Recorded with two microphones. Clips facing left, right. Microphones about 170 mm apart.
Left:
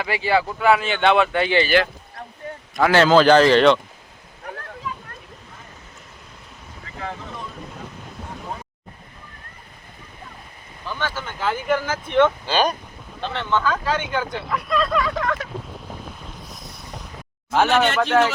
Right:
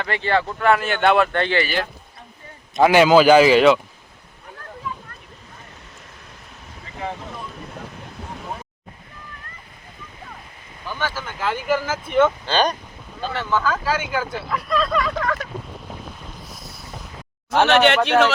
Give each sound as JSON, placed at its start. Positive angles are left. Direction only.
{"t": 0.0, "sound": "speech", "side_deg": 5}
{"t": 1.7, "sound": "a sound", "side_deg": 80}
{"t": 2.7, "sound": "a man's voice", "side_deg": -15}
{"t": 4.5, "sound": "waterfall", "side_deg": 80}
{"t": 10.8, "sound": "speech", "side_deg": -10}
{"t": 12.5, "sound": "speech", "side_deg": 5}
{"t": 13.2, "sound": "speech", "side_deg": -5}
{"t": 16.7, "sound": "a sound", "side_deg": -5}
{"t": 17.7, "sound": "speech", "side_deg": -70}